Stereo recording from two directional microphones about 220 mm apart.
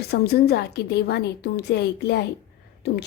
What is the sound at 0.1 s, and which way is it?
A woman's voice, 45° left (ahead or behind).